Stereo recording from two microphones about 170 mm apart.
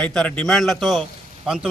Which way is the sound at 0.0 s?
5° left (ahead or behind).